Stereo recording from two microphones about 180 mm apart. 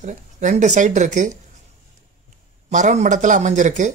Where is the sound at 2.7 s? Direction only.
40° right (ahead or behind).